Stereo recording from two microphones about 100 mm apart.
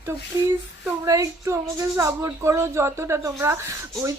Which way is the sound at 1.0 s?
30° right (ahead or behind).